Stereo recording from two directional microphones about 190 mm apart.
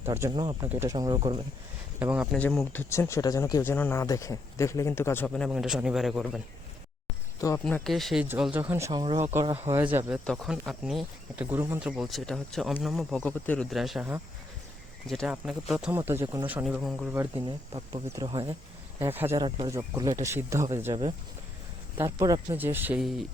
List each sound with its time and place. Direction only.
0.0 s speech: 15° right (ahead or behind)
2.0 s speech: 10° right (ahead or behind)
2.4 s speech: 5° left (ahead or behind)
7.6 s speech: centre (ahead or behind)
10.2 s speech: centre (ahead or behind)
16.6 s speech: centre (ahead or behind)
17.2 s speech: 20° right (ahead or behind)
18.9 s speech: 10° right (ahead or behind)
19.4 s speech: 25° right (ahead or behind)
21.9 s speech: 15° right (ahead or behind); by 23.2 s centre (ahead or behind)